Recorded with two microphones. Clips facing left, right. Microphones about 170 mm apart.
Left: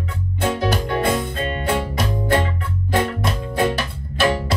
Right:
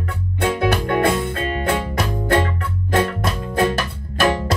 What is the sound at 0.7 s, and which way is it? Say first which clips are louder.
Music: right 2 dB; 55° right (ahead or behind).